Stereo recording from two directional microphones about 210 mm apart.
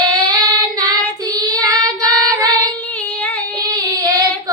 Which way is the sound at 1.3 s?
15° right (ahead or behind).